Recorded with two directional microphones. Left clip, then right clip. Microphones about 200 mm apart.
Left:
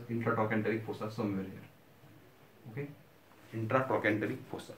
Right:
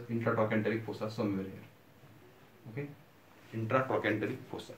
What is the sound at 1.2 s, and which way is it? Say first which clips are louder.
Speech: right 2 dB; centre (ahead or behind).